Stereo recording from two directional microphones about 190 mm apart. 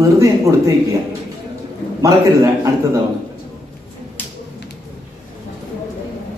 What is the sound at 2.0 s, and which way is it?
Speech, 15° right (ahead or behind).